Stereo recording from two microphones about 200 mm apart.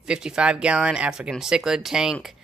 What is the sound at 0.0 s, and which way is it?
Speech, 5° right (ahead or behind).